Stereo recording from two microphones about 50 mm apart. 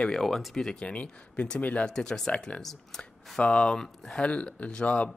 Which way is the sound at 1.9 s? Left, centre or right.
Centre.